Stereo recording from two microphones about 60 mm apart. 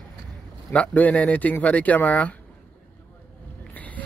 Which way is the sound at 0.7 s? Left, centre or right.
Left.